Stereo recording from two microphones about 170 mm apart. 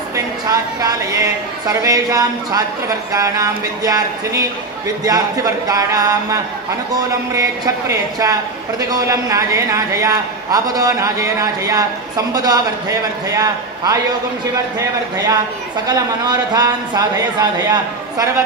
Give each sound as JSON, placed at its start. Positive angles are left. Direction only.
{"t": 0.1, "sound": "a woman's voice", "side_deg": -20}